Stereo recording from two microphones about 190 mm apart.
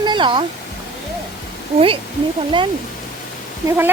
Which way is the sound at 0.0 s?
25° right (ahead or behind).